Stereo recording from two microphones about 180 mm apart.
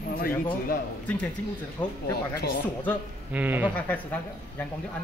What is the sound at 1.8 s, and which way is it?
Speech, 10° left (ahead or behind).